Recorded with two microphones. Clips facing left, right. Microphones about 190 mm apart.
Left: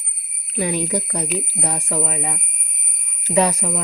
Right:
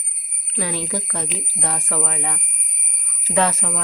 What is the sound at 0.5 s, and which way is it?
Speech, 15° left (ahead or behind).